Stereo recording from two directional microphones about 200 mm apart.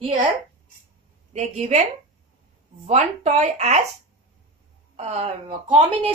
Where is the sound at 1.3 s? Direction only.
35° right (ahead or behind).